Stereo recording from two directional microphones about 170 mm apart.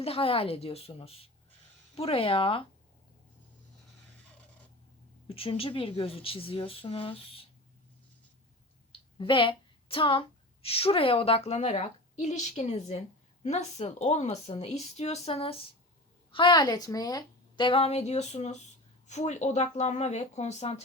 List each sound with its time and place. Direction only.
0.0 s a woman's voice: 35° left (ahead or behind)
5.3 s a woman's voice: 35° left (ahead or behind)
8.9 s a woman's voice: 30° left (ahead or behind)